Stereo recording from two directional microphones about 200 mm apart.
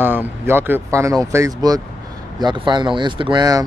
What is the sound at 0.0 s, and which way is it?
Speech, 10° right (ahead or behind).